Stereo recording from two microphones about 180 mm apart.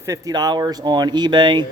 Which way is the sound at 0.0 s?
20° right (ahead or behind).